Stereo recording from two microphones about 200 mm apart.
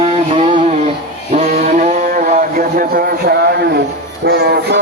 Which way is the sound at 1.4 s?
45° right (ahead or behind).